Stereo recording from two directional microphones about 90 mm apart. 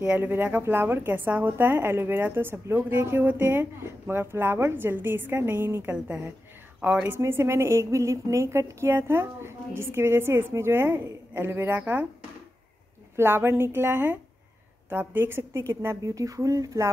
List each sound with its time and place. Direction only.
0.0 s a woman's voice: 20° right (ahead or behind)
5.9 s a woman's voice: 15° right (ahead or behind)
7.2 s a woman's voice: 30° right (ahead or behind)
13.1 s a woman's voice: 25° right (ahead or behind)